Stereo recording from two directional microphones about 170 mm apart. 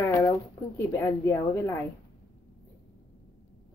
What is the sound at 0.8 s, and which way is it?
Speech, 15° left (ahead or behind).